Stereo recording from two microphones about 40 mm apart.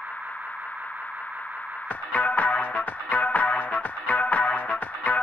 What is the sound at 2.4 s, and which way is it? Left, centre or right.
Music, left.